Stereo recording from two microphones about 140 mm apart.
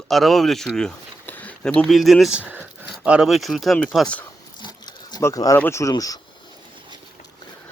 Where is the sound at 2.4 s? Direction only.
15° right (ahead or behind).